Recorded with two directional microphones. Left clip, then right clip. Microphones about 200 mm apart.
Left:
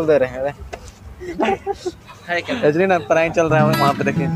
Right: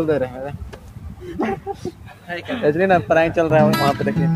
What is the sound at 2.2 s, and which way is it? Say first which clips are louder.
Speech: left 6 dB; 20° right (ahead or behind).